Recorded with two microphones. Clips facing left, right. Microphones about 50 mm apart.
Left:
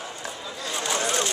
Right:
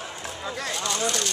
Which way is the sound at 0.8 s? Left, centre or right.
Left.